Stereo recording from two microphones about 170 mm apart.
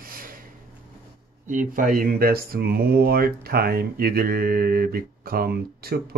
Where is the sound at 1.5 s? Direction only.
50° right (ahead or behind).